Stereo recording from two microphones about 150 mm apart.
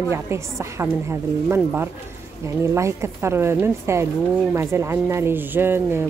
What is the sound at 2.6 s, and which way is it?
A woman's voice, 20° right (ahead or behind).